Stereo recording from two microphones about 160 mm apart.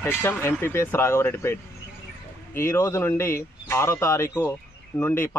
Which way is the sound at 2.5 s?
15° left (ahead or behind).